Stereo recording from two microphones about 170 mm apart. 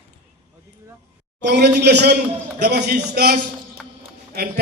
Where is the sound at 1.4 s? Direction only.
80° right.